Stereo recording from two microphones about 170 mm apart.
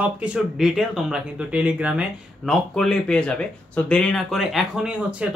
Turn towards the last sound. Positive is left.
turn(degrees=-5)  # may be behind; listen again after turning